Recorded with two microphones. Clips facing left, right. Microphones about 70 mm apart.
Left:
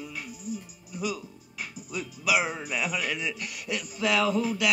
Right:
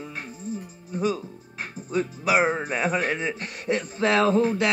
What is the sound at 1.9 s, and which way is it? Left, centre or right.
Speech, right.